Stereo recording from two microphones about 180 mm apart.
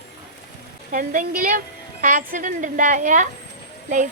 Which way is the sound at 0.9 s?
45° right (ahead or behind).